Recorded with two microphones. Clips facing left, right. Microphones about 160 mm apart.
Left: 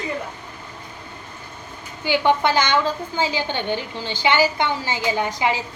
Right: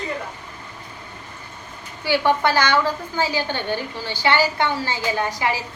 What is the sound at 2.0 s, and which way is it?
A woman's voice, 20° left (ahead or behind).